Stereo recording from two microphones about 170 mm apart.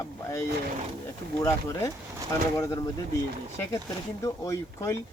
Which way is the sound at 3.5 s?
15° left (ahead or behind).